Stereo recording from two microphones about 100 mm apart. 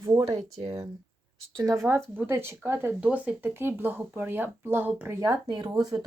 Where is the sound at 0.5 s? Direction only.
80° right.